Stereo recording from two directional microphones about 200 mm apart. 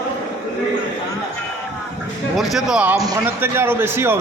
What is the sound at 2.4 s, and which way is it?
A man's voice, centre (ahead or behind).